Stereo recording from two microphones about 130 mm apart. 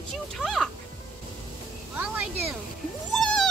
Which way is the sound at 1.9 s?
10° right (ahead or behind).